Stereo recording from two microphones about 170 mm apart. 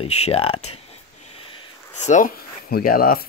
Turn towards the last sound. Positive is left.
turn(degrees=55)  # may be behind; listen again after turning